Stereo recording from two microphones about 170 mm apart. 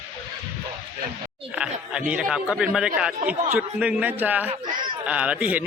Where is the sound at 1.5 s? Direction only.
5° right (ahead or behind).